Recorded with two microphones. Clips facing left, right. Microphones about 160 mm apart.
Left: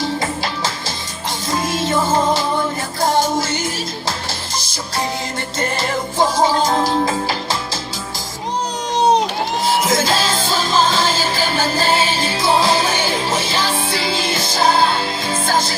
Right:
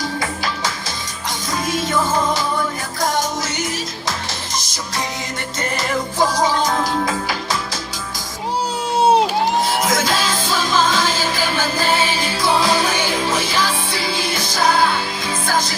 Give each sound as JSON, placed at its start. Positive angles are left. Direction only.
{"t": 0.0, "sound": "music", "side_deg": 25}
{"t": 9.0, "sound": "crowd", "side_deg": -5}
{"t": 9.6, "sound": "music", "side_deg": 30}